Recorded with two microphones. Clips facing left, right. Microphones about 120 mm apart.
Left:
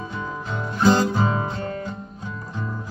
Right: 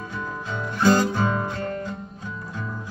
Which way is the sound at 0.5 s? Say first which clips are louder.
Left 1 dB; 10° left (ahead or behind).